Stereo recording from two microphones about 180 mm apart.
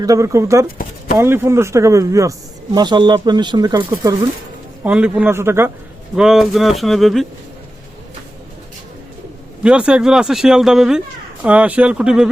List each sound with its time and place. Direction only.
0.0 s speech: 20° right (ahead or behind)
4.8 s speech: 5° right (ahead or behind)
6.1 s speech: 5° right (ahead or behind)
9.6 s speech: 5° right (ahead or behind)